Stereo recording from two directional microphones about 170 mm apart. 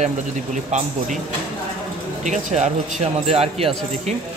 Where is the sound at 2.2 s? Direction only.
45° right (ahead or behind).